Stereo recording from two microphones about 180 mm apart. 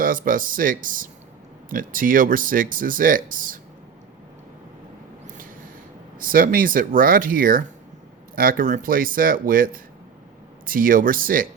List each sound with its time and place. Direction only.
0.0 s speech: 50° right (ahead or behind)
6.1 s speech: 50° right (ahead or behind)